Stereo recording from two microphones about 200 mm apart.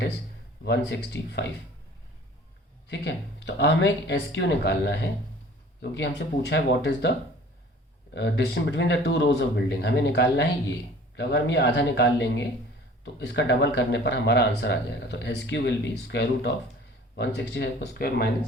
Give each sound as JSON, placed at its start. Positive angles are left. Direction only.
{"t": 0.6, "sound": "speech", "side_deg": 60}
{"t": 2.9, "sound": "speech", "side_deg": 60}
{"t": 8.1, "sound": "speech", "side_deg": 60}